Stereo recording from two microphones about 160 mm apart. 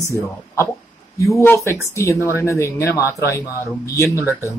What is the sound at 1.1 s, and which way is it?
Speech, 20° left (ahead or behind).